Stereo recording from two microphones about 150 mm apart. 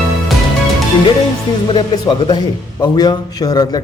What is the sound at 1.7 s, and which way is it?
Speech, 30° left (ahead or behind).